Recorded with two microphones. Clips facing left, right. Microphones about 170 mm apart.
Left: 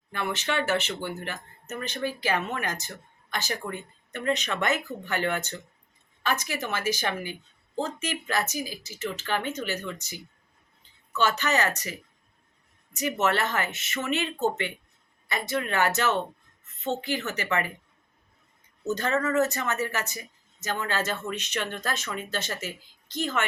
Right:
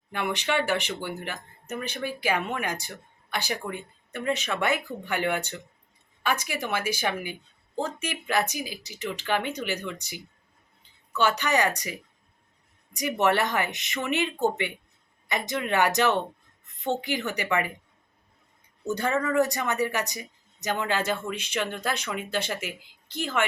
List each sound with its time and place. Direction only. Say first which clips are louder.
0.1 s speech: right 2 dB; 15° right (ahead or behind)
18.9 s speech: even; 10° right (ahead or behind)